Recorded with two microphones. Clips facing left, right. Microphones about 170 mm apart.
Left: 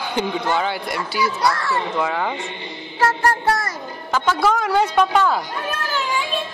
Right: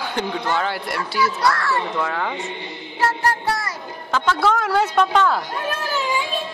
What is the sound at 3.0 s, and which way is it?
Music, 45° left (ahead or behind).